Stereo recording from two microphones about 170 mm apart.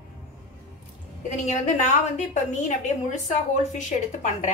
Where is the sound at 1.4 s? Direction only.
45° left (ahead or behind).